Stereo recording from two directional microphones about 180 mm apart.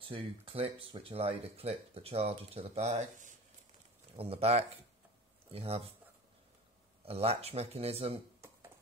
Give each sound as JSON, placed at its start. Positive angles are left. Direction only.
{"t": 0.0, "sound": "speech", "side_deg": -30}
{"t": 7.1, "sound": "speech", "side_deg": -35}